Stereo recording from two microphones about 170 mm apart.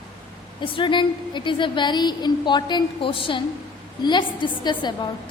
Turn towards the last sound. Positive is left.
turn(degrees=25)  # may be behind; listen again after turning